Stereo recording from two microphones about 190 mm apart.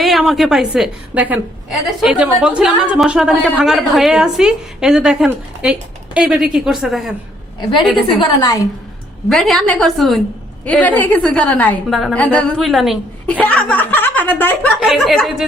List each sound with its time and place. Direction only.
0.0 s a woman's voice: centre (ahead or behind)
8.0 s a woman's voice: 25° left (ahead or behind)
9.3 s a woman's voice: centre (ahead or behind)
14.8 s a woman's voice: centre (ahead or behind)